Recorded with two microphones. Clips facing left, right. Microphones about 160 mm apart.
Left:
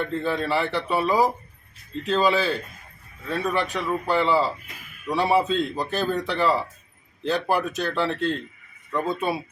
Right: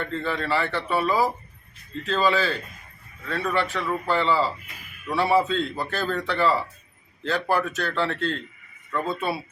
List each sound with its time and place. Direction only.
0.1 s speech: 15° left (ahead or behind)